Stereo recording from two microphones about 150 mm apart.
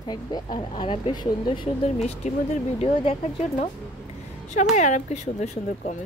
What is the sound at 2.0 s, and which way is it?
A woman's voice, 50° left (ahead or behind).